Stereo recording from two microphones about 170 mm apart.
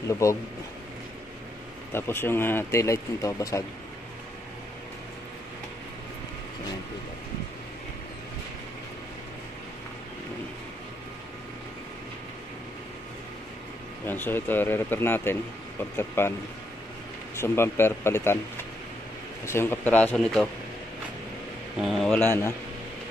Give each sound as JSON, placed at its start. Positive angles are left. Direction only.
{"t": 0.2, "sound": "speech", "side_deg": 20}
{"t": 1.9, "sound": "speech", "side_deg": 15}
{"t": 14.0, "sound": "speech", "side_deg": 10}
{"t": 17.4, "sound": "speech", "side_deg": 15}
{"t": 21.8, "sound": "speech", "side_deg": 0}
{"t": 22.2, "sound": "speech", "side_deg": 15}